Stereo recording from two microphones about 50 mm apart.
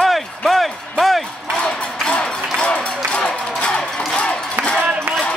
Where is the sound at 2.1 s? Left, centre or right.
Left.